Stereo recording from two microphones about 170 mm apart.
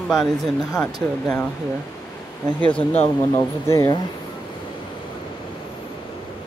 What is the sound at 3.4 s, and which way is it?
Speech, 15° left (ahead or behind).